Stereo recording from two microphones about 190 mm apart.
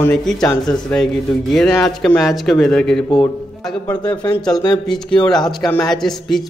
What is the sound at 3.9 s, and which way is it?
Speech, 20° left (ahead or behind).